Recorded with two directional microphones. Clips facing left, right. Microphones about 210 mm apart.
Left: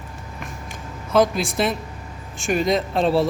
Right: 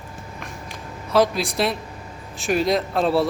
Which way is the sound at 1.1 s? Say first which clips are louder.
Left 1 dB; centre (ahead or behind).